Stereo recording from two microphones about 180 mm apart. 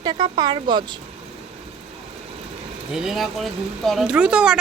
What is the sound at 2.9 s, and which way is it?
Speech, 5° right (ahead or behind).